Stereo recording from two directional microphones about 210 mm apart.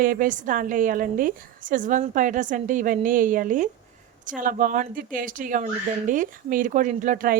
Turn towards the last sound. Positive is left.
turn(degrees=-40)  # may be behind; listen again after turning